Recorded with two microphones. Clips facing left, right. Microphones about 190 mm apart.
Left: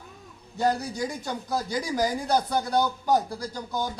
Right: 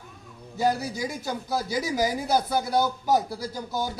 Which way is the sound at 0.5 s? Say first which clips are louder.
Even; 5° right (ahead or behind).